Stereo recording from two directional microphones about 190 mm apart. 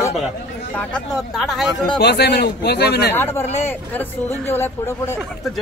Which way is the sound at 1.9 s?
60° left (ahead or behind).